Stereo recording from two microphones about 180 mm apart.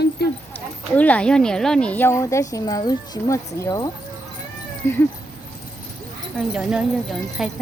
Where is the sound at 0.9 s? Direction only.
10° left (ahead or behind).